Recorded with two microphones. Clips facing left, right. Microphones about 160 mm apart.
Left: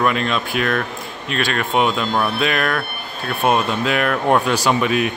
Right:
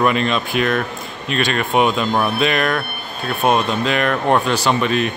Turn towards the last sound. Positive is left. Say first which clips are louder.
# even
turn(degrees=10)  # may be behind; listen again after turning